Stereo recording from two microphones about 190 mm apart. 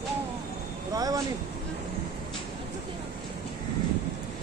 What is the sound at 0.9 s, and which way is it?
Speech, 20° right (ahead or behind).